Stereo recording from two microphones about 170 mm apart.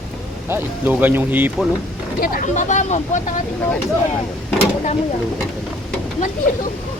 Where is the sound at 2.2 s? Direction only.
50° left (ahead or behind).